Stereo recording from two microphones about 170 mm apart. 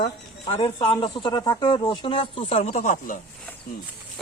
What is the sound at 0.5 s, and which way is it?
Speech, 30° left (ahead or behind).